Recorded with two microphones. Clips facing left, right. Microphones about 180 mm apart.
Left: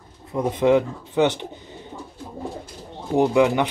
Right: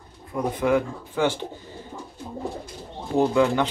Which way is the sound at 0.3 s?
20° left (ahead or behind).